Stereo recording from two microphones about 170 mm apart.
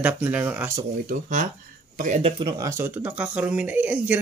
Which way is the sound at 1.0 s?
45° right (ahead or behind).